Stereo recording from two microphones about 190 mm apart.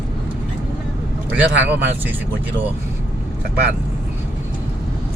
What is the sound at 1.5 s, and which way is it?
Speech, 70° right (ahead or behind).